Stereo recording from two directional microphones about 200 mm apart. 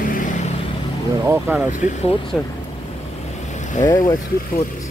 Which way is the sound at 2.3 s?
5° left (ahead or behind).